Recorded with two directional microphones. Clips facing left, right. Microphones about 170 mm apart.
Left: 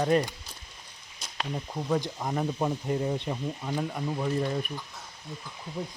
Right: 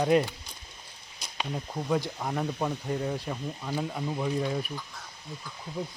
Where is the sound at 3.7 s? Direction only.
Centre (ahead or behind).